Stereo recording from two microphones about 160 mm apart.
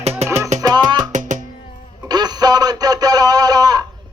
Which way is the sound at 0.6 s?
25° right (ahead or behind).